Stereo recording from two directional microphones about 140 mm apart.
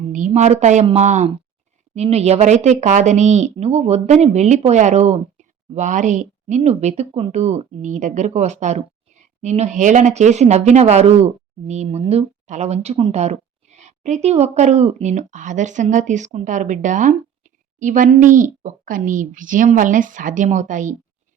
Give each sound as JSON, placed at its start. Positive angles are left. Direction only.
{"t": 0.3, "sound": "speech", "side_deg": -55}
{"t": 6.6, "sound": "a woman's voice", "side_deg": -50}